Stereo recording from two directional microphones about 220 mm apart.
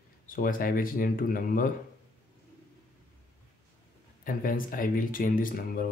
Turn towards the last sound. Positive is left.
turn(degrees=40)  # may be behind; listen again after turning